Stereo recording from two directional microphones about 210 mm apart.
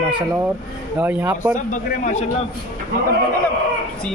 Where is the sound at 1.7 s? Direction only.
35° left (ahead or behind).